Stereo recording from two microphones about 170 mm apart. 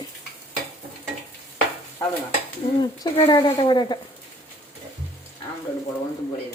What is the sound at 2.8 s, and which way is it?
Speech, 30° left (ahead or behind).